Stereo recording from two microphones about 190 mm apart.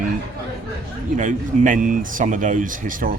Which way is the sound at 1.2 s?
45° right (ahead or behind).